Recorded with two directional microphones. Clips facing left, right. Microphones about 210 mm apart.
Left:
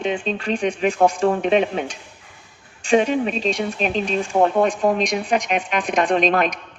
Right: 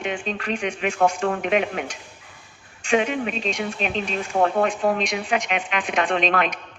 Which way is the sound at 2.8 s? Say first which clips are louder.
Left 4 dB; 35° left (ahead or behind).